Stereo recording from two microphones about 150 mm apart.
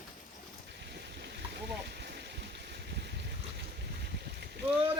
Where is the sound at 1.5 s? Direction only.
90° right.